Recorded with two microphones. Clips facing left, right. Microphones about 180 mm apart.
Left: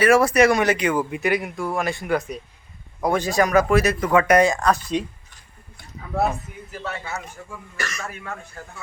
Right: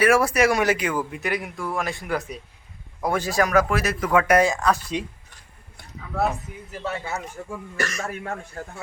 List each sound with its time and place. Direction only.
0.0 s speech: 10° right (ahead or behind)
7.4 s speech: 35° right (ahead or behind)
7.8 s speech: 50° right (ahead or behind)